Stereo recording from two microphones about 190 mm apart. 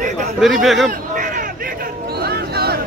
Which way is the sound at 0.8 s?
45° right (ahead or behind).